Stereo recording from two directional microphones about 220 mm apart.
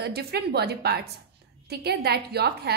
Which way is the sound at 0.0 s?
45° right (ahead or behind).